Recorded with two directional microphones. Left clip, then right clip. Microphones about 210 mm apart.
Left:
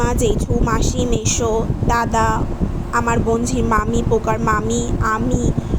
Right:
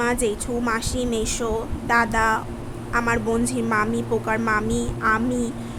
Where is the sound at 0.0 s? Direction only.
15° left (ahead or behind).